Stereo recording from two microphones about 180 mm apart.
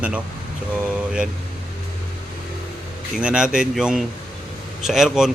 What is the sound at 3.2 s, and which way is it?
Speech, 5° right (ahead or behind).